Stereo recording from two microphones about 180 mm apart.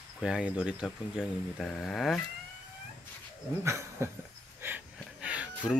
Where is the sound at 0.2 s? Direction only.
5° right (ahead or behind).